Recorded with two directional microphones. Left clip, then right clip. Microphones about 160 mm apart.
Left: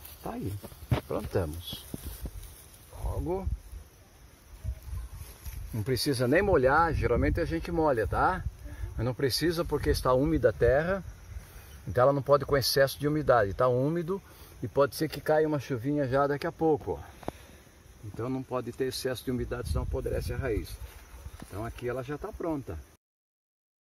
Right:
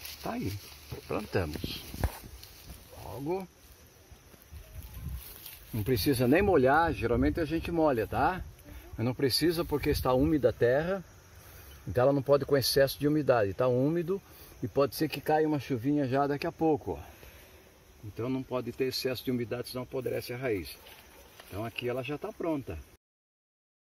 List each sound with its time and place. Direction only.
1.1 s speech: 15° right (ahead or behind)
3.2 s speech: 5° right (ahead or behind)
5.9 s speech: 30° right (ahead or behind)
16.6 s speech: 20° right (ahead or behind)
18.2 s speech: 15° right (ahead or behind)
21.7 s speech: 15° right (ahead or behind)